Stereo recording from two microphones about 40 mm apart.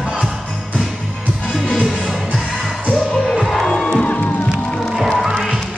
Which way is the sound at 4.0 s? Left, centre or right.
Left.